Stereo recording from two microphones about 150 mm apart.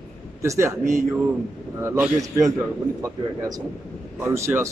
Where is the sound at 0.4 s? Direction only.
20° right (ahead or behind).